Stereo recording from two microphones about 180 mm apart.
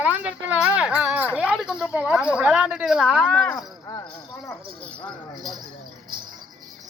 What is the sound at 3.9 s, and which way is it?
Rattle, 20° left (ahead or behind).